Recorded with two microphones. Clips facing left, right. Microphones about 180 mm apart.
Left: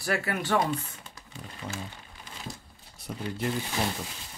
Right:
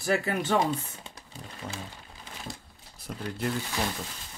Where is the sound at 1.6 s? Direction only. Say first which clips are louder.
Left 1 dB; 5° left (ahead or behind).